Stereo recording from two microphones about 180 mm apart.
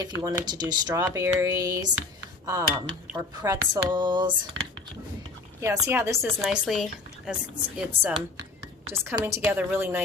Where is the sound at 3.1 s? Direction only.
20° right (ahead or behind).